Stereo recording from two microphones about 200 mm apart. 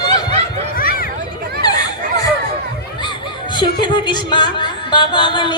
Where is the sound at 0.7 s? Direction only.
45° left (ahead or behind).